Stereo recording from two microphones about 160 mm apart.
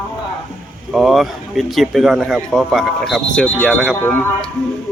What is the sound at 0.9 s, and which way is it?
A man's voice, centre (ahead or behind).